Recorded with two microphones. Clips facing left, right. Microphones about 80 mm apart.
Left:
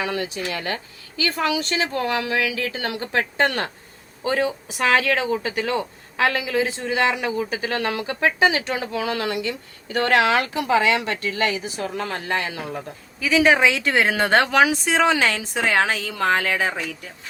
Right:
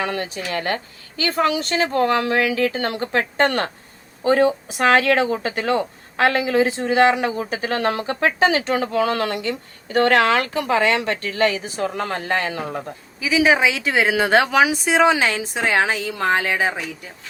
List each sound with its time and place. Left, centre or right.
0.0 s speech: right
13.2 s speech: centre